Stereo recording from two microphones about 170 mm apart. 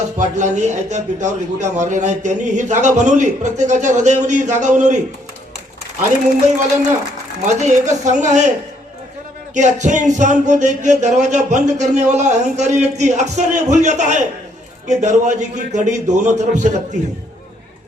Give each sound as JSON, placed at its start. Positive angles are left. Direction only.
{"t": 0.2, "sound": "a man's voice", "side_deg": -45}
{"t": 7.4, "sound": "a man's voice", "side_deg": -45}
{"t": 9.6, "sound": "a man's voice", "side_deg": -45}